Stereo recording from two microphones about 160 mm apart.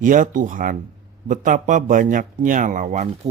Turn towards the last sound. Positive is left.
turn(degrees=-50)  # may be behind; listen again after turning